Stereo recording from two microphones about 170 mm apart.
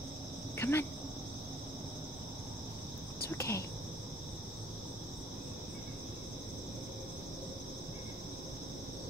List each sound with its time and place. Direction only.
0.6 s cricket: 15° left (ahead or behind)
3.3 s speech: 15° left (ahead or behind)